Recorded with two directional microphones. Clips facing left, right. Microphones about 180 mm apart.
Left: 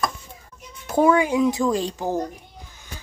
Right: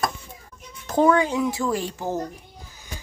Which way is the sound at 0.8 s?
10° left (ahead or behind).